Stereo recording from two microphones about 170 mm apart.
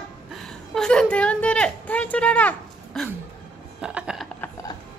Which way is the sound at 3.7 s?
5° right (ahead or behind).